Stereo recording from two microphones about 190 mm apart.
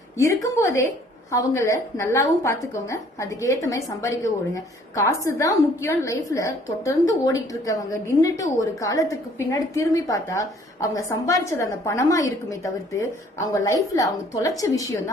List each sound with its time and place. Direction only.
0.2 s a woman's voice: 15° left (ahead or behind)